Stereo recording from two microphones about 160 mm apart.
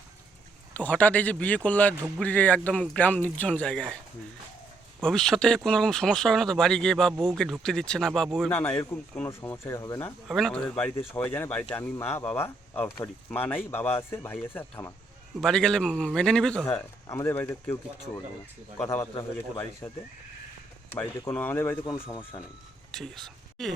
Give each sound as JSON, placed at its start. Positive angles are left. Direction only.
{"t": 0.8, "sound": "speech", "side_deg": 10}
{"t": 5.0, "sound": "speech", "side_deg": 5}
{"t": 10.2, "sound": "speech", "side_deg": 0}
{"t": 15.4, "sound": "speech", "side_deg": 5}
{"t": 16.6, "sound": "speech", "side_deg": 20}
{"t": 18.8, "sound": "speech", "side_deg": 15}
{"t": 20.9, "sound": "speech", "side_deg": 15}
{"t": 22.0, "sound": "speech", "side_deg": 35}
{"t": 22.9, "sound": "speech", "side_deg": 0}